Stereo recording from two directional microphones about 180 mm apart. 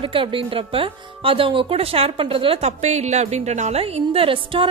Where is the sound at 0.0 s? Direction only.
30° right (ahead or behind).